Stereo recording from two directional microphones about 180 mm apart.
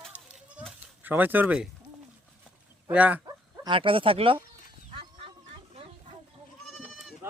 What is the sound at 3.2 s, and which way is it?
Speech, 25° right (ahead or behind).